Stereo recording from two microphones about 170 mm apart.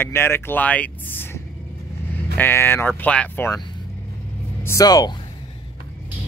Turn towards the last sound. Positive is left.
turn(degrees=20)  # may be behind; listen again after turning